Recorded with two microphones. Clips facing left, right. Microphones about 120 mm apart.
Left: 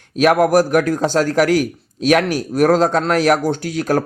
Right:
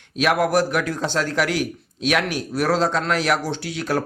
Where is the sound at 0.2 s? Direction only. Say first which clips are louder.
Left 6 dB; 45° left (ahead or behind).